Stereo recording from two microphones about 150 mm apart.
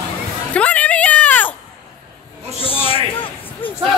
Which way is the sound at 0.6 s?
10° left (ahead or behind).